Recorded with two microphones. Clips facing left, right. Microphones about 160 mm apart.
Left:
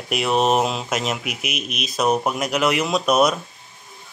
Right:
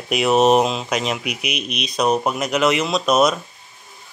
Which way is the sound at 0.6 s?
15° right (ahead or behind).